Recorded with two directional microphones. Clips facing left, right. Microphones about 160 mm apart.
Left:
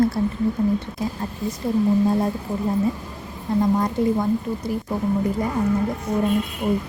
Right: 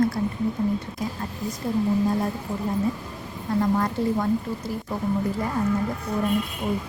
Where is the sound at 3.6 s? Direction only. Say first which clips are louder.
Left 4 dB; 15° left (ahead or behind).